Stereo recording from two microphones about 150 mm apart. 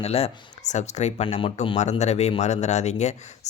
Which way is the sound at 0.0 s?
45° left (ahead or behind).